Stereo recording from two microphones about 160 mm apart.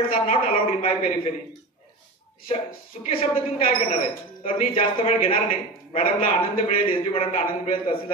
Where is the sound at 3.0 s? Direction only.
35° left (ahead or behind).